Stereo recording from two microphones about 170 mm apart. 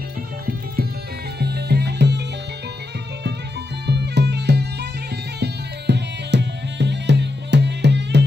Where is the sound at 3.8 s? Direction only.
80° right.